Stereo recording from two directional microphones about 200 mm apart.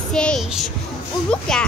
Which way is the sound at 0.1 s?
5° left (ahead or behind).